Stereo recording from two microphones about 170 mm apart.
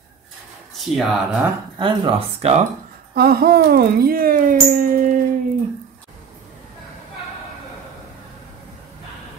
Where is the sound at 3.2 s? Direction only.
65° right (ahead or behind).